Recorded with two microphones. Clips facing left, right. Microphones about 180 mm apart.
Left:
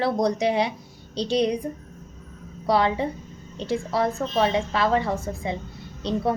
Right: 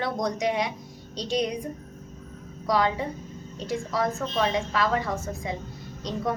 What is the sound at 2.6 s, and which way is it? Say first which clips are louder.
A woman's voice: left 3 dB; 30° left (ahead or behind).